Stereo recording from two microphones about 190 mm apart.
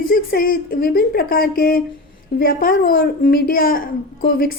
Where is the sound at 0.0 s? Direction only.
50° left (ahead or behind).